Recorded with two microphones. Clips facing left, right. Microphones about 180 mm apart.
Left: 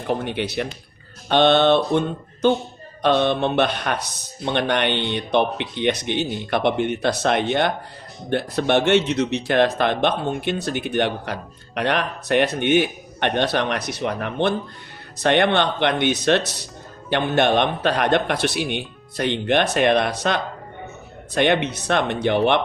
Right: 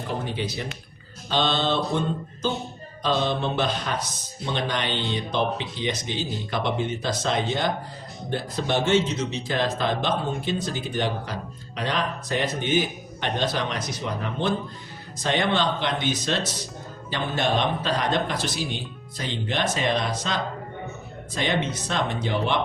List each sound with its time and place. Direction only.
0.1 s speech: 65° left (ahead or behind)